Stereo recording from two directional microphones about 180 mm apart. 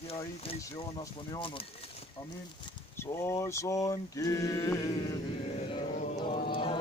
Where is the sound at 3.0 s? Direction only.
15° left (ahead or behind).